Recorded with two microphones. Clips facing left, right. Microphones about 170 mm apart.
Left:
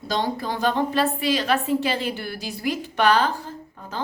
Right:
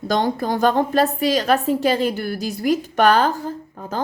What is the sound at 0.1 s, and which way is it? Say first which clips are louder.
A woman's voice: right 5 dB; 50° right (ahead or behind).